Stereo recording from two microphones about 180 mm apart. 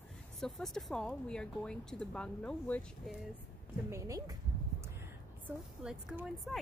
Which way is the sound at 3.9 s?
20° right (ahead or behind).